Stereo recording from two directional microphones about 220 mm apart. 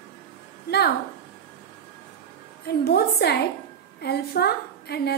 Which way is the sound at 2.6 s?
45° left (ahead or behind).